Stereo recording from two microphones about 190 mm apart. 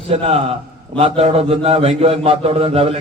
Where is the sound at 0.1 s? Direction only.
30° right (ahead or behind).